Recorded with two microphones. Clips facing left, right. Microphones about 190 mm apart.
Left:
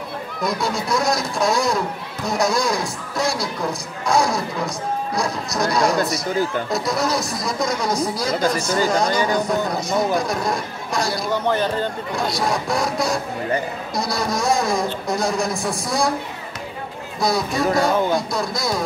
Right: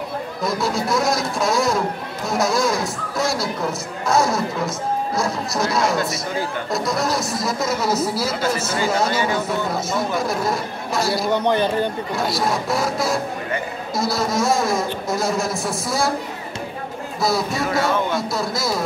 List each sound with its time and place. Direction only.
0.4 s speech: centre (ahead or behind)
11.3 s speech: 15° right (ahead or behind)
12.2 s speech: centre (ahead or behind)
17.2 s speech: centre (ahead or behind)